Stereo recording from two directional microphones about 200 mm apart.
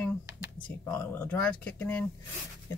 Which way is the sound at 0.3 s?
15° right (ahead or behind).